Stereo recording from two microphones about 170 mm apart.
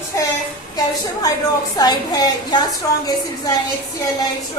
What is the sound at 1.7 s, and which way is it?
Speech, 20° left (ahead or behind).